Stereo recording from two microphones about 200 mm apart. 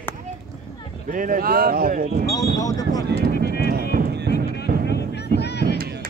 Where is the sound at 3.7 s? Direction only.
50° right (ahead or behind).